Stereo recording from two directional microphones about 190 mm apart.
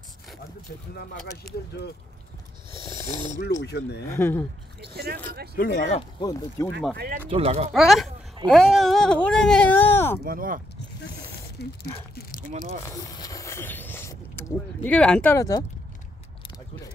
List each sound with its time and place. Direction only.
0.9 s speech: 55° left (ahead or behind)
2.8 s a sound: 25° right (ahead or behind)
3.3 s speech: 65° left (ahead or behind)
4.1 s speech: 10° left (ahead or behind)
4.9 s speech: 55° right (ahead or behind)
5.8 s speech: 35° left (ahead or behind)
6.6 s speech: 15° left (ahead or behind)
7.2 s speech: 30° right (ahead or behind)
7.7 s speech: centre (ahead or behind)
10.2 s speech: 50° right (ahead or behind)
11.6 s speech: 60° left (ahead or behind)
12.8 s speech: 20° left (ahead or behind)